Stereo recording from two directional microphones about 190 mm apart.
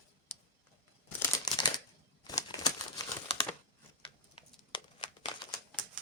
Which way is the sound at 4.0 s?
25° left (ahead or behind).